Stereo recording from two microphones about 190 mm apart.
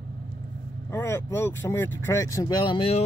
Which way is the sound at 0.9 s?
15° left (ahead or behind).